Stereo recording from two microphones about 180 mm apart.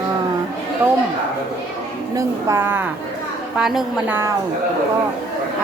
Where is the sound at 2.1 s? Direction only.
15° right (ahead or behind).